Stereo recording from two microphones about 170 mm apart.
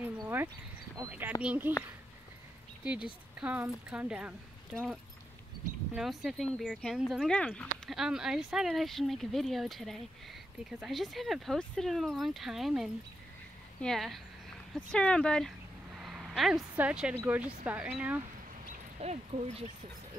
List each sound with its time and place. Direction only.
0.2 s a sound: 15° right (ahead or behind)
0.9 s speech: 15° right (ahead or behind)
2.8 s speech: 5° right (ahead or behind)
5.9 s speech: centre (ahead or behind)
18.9 s speech: 40° right (ahead or behind)